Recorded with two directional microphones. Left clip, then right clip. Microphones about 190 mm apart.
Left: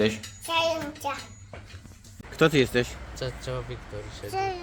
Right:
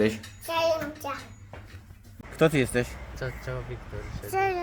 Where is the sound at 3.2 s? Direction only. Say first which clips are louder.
Left 2 dB; 50° left (ahead or behind).